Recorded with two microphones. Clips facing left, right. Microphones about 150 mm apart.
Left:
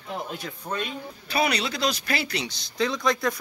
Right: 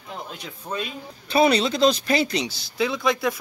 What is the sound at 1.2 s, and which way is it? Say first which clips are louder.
Speech: right 7 dB; 25° right (ahead or behind).